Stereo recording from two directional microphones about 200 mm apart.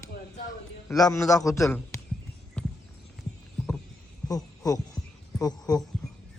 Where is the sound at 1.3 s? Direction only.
15° left (ahead or behind).